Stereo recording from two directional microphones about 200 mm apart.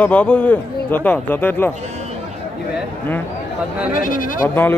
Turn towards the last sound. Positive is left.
turn(degrees=10)  # may be behind; listen again after turning